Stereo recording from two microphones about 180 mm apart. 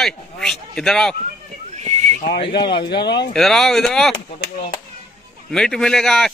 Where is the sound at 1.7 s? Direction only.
40° right (ahead or behind).